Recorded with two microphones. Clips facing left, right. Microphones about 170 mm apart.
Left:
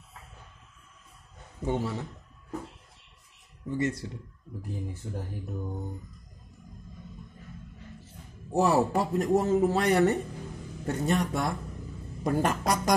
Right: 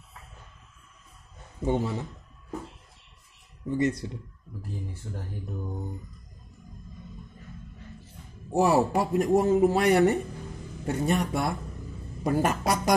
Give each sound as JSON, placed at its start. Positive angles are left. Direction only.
{"t": 1.6, "sound": "a man's voice", "side_deg": -20}
{"t": 3.6, "sound": "speech", "side_deg": -20}
{"t": 8.5, "sound": "speech", "side_deg": -10}